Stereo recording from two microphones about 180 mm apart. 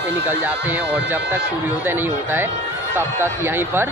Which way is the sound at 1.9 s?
10° right (ahead or behind).